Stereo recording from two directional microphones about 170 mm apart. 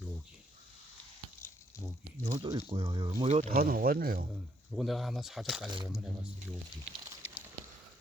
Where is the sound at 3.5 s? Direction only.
60° right (ahead or behind).